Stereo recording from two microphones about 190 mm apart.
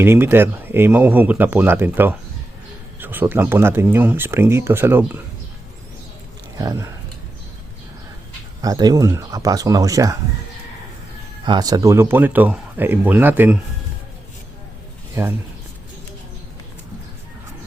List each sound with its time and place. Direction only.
0.0 s speech: 10° right (ahead or behind)
6.6 s speech: 15° right (ahead or behind)
8.6 s speech: 20° right (ahead or behind)
11.4 s speech: 20° right (ahead or behind)
15.1 s speech: 15° right (ahead or behind)